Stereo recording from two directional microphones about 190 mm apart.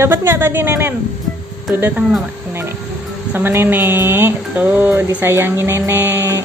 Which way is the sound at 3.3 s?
10° right (ahead or behind).